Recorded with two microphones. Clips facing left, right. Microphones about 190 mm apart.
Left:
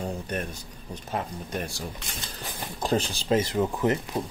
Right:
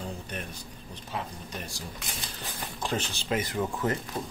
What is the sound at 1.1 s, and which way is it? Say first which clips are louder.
Speech: left 5 dB; 55° left (ahead or behind).